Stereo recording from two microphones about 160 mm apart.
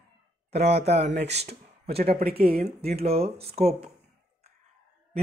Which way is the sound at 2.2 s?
75° right (ahead or behind).